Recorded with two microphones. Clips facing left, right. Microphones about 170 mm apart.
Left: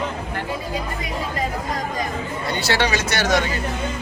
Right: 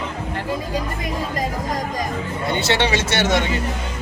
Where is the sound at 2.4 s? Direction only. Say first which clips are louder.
Right 2 dB; 25° right (ahead or behind).